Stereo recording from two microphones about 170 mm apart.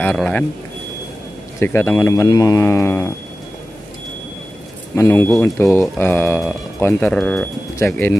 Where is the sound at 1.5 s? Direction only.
15° left (ahead or behind).